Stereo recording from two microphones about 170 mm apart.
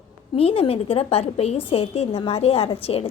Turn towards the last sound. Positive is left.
turn(degrees=35)  # may be behind; listen again after turning